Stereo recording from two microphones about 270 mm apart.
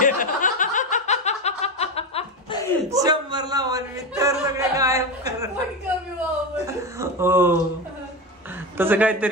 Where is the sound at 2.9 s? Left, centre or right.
Centre.